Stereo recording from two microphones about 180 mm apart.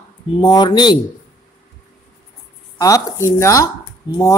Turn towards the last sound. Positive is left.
turn(degrees=20)  # may be behind; listen again after turning